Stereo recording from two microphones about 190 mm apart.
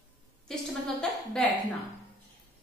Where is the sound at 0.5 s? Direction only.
Centre (ahead or behind).